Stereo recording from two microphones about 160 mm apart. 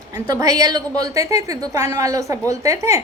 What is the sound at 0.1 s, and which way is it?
A woman's voice, 20° right (ahead or behind).